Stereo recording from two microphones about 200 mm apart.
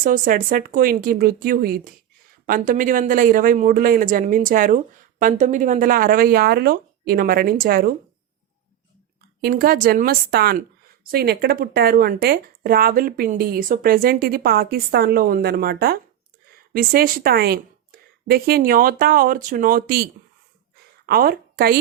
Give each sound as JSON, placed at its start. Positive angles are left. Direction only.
{"t": 0.0, "sound": "speech", "side_deg": -45}
{"t": 9.4, "sound": "speech", "side_deg": -45}
{"t": 21.1, "sound": "a woman's voice", "side_deg": -45}